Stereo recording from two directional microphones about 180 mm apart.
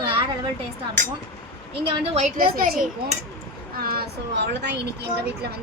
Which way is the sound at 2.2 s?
55° right (ahead or behind).